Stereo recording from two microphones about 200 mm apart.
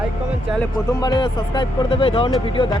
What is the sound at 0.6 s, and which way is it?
Speech, 20° left (ahead or behind).